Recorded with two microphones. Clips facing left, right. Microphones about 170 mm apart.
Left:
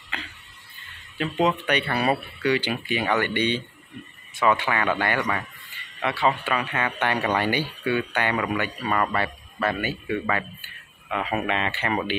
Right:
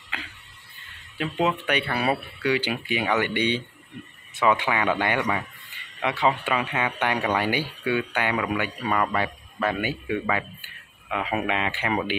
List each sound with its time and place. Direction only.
1.1 s speech: 10° right (ahead or behind)